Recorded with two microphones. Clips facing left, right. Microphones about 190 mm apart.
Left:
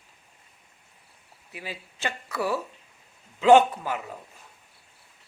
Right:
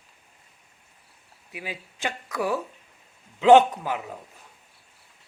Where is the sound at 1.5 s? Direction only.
15° right (ahead or behind).